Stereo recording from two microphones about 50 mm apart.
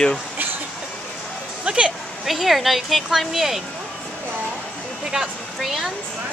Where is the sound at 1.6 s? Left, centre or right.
Centre.